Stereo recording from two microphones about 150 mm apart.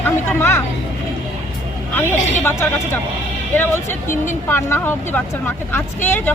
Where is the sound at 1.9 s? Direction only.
15° left (ahead or behind).